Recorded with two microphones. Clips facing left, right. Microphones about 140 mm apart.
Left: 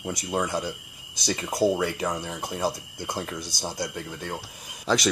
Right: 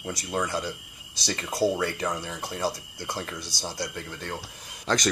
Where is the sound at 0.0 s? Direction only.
20° left (ahead or behind).